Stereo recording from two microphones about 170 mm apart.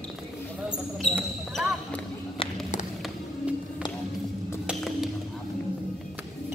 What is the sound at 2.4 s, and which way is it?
Run, 45° left (ahead or behind).